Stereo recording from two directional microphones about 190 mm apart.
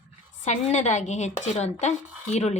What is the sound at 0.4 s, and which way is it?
A woman's voice, 40° left (ahead or behind).